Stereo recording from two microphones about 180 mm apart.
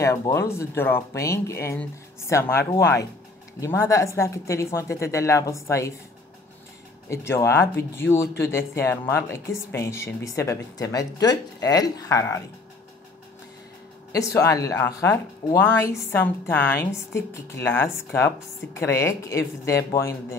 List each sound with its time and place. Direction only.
0.0 s speech: 15° left (ahead or behind)
7.1 s speech: 15° left (ahead or behind)
14.1 s speech: 15° left (ahead or behind)